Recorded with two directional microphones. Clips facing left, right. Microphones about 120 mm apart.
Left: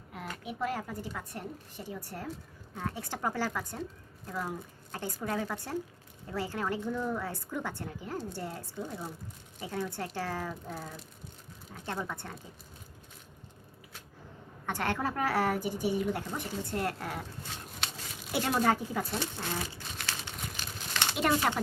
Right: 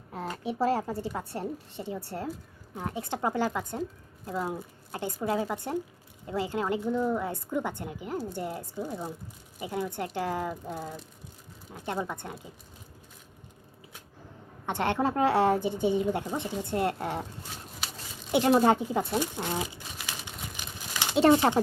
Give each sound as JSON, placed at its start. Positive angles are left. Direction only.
{"t": 0.1, "sound": "a woman's voice", "side_deg": -30}
{"t": 14.7, "sound": "a woman's voice", "side_deg": -20}
{"t": 17.5, "sound": "a sound", "side_deg": -5}
{"t": 18.3, "sound": "a woman's voice", "side_deg": -20}
{"t": 19.8, "sound": "crumpling", "side_deg": -5}
{"t": 20.1, "sound": "crumpling", "side_deg": -15}
{"t": 20.3, "sound": "crumpling", "side_deg": 0}
{"t": 21.2, "sound": "a woman's voice", "side_deg": -30}